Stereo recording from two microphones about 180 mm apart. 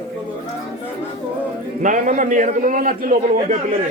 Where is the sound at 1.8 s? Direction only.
45° right (ahead or behind).